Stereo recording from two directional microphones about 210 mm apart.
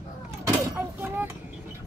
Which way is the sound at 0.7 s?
10° right (ahead or behind).